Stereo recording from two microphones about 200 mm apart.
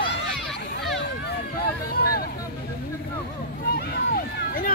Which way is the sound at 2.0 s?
50° left (ahead or behind).